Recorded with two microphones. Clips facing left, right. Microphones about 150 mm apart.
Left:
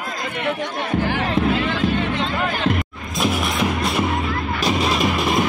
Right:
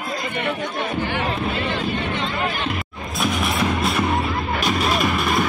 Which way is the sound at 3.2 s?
5° left (ahead or behind).